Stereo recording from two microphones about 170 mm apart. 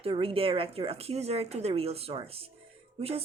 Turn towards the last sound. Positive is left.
turn(degrees=-35)  # may be behind; listen again after turning